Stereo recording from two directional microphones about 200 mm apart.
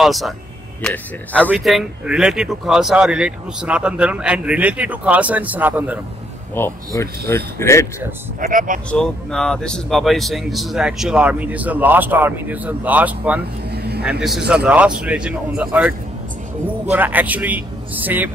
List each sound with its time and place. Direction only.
0.0 s speech: centre (ahead or behind)
1.4 s speech: 5° right (ahead or behind)
6.5 s speech: 15° left (ahead or behind)
8.4 s speech: 40° right (ahead or behind)
8.9 s speech: 5° left (ahead or behind)
13.7 s vehicle: 55° right (ahead or behind)
14.5 s speech: 5° right (ahead or behind)
16.9 s a man's voice: 10° right (ahead or behind)